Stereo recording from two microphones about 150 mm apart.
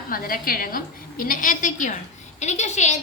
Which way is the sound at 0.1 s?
75° left (ahead or behind).